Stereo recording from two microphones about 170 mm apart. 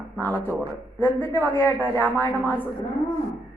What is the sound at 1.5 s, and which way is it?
A woman's voice, 15° left (ahead or behind).